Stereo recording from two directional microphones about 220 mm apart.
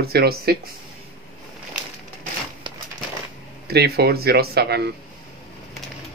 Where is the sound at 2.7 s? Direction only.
20° right (ahead or behind).